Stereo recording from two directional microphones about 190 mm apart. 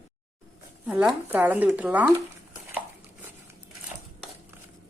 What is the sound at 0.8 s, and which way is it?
Speech, 5° right (ahead or behind).